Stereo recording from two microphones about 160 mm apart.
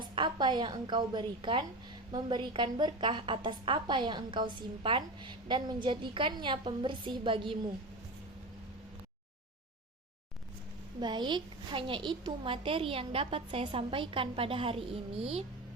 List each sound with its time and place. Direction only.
0.0 s a woman's voice: 30° right (ahead or behind)
11.0 s a woman's voice: 30° right (ahead or behind)